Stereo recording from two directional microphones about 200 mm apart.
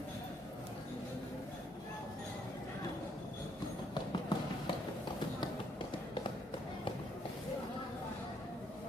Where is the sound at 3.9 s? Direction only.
20° left (ahead or behind).